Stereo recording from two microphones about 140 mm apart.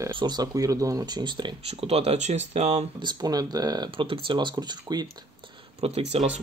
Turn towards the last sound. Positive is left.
turn(degrees=-45)  # may be behind; listen again after turning